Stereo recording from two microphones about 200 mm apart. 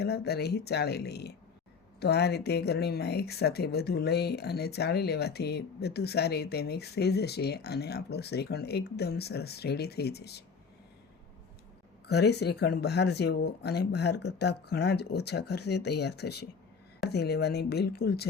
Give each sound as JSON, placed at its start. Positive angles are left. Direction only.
{"t": 0.0, "sound": "speech", "side_deg": 55}
{"t": 12.0, "sound": "speech", "side_deg": 55}